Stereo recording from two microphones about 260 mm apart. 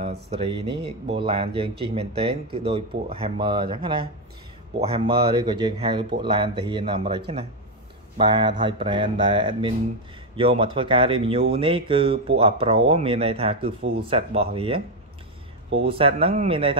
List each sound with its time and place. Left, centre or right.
0.7 s speech: centre
15.8 s speech: right